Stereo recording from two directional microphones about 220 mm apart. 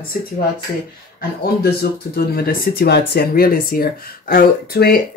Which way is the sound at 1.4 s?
45° left (ahead or behind).